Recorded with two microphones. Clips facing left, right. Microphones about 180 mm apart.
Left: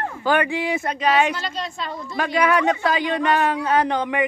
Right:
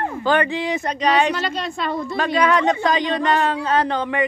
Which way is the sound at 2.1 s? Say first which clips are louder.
Even; 10° left (ahead or behind).